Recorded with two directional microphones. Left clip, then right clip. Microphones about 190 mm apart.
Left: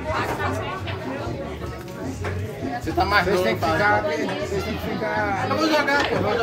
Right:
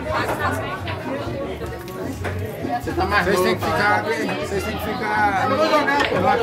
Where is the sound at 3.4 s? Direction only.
65° right (ahead or behind).